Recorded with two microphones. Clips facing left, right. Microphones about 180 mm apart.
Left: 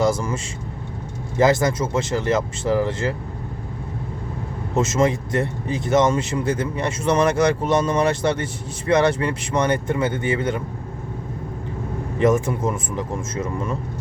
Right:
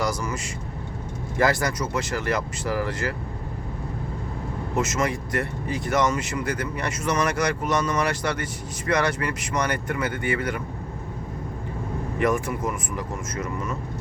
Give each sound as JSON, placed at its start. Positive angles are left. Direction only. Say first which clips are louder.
{"t": 0.0, "sound": "speech", "louder": "left 6 dB", "side_deg": 25}
{"t": 1.4, "sound": "speech", "louder": "left 5 dB", "side_deg": 20}
{"t": 4.7, "sound": "speech", "louder": "left 6 dB", "side_deg": 25}
{"t": 12.2, "sound": "speech", "louder": "left 5 dB", "side_deg": 25}